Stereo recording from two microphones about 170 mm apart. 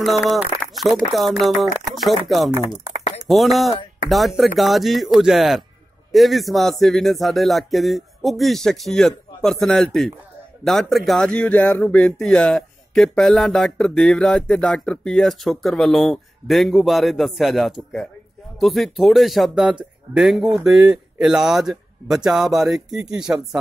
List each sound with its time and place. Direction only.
0.6 s speech: centre (ahead or behind)
2.6 s a sound: 40° left (ahead or behind)
3.3 s speech: centre (ahead or behind)